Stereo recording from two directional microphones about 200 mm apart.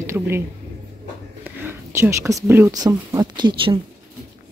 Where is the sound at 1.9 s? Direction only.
15° right (ahead or behind).